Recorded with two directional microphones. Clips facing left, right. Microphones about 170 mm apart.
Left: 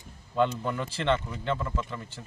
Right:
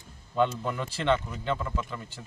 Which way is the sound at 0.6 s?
Centre (ahead or behind).